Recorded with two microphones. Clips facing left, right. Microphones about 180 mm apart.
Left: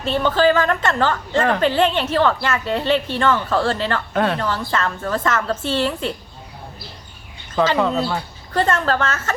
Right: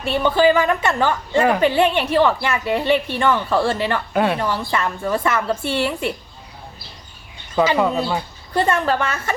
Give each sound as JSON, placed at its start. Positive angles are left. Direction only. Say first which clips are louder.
{"t": 0.0, "sound": "a woman's voice", "louder": "right 1 dB", "side_deg": -15}
{"t": 7.5, "sound": "a woman's voice", "louder": "right 1 dB", "side_deg": -10}